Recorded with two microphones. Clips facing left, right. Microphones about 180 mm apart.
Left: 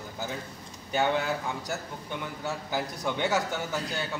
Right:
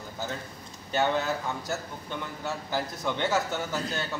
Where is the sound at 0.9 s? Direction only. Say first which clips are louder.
Even; 15° left (ahead or behind).